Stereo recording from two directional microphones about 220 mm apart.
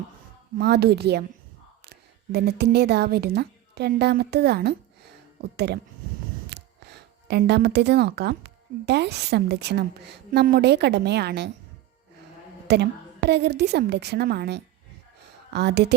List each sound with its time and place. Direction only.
0.6 s a woman's voice: 45° right (ahead or behind)
1.8 s a sound: 45° right (ahead or behind)
2.7 s a woman's voice: 50° right (ahead or behind)
12.6 s a woman's voice: 50° right (ahead or behind)